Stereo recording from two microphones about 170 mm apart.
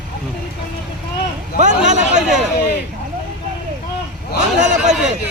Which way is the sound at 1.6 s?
45° right (ahead or behind).